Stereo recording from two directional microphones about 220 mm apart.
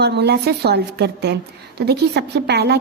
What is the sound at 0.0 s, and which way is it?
Speech, 50° right (ahead or behind).